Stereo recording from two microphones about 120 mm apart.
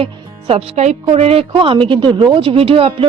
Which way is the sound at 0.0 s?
55° right (ahead or behind).